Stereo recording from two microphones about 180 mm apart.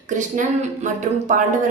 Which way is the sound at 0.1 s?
45° right (ahead or behind).